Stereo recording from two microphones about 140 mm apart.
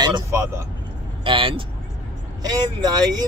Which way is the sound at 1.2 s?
40° right (ahead or behind).